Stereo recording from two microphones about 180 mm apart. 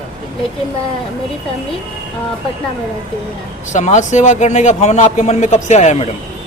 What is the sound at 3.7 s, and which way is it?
A man's voice, 40° left (ahead or behind).